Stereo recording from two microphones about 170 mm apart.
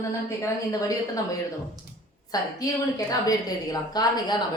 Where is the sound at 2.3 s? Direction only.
20° left (ahead or behind).